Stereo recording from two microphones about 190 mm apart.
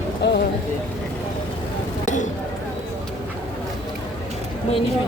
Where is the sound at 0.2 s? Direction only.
65° left (ahead or behind).